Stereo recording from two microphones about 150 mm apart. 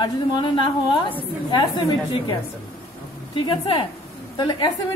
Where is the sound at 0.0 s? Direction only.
30° left (ahead or behind).